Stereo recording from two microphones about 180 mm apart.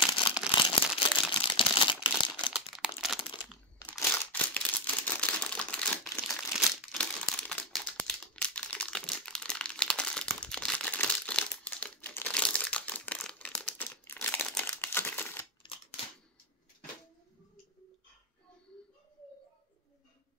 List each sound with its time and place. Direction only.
0.6 s a sound: 30° left (ahead or behind)
2.5 s crumpling: 5° right (ahead or behind)
3.9 s crumpling: 10° left (ahead or behind)
6.5 s crumpling: 5° right (ahead or behind)